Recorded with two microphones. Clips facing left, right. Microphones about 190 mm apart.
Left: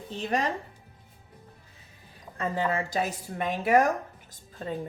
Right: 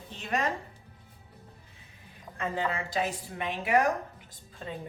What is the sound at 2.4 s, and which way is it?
Speech, 45° left (ahead or behind).